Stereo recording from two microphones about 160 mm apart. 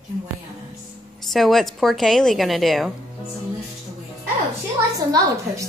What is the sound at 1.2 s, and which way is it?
A woman's voice, centre (ahead or behind).